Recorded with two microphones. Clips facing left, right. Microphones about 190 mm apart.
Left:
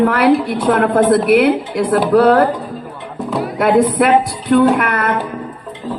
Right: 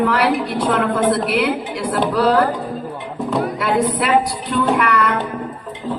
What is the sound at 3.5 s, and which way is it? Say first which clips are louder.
A woman's voice: left 6 dB; 50° left (ahead or behind).